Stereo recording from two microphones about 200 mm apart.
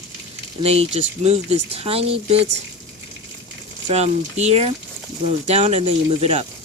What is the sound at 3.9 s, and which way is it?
Speech, 35° right (ahead or behind).